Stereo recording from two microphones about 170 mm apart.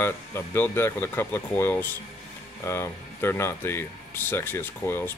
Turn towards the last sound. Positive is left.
turn(degrees=10)  # may be behind; listen again after turning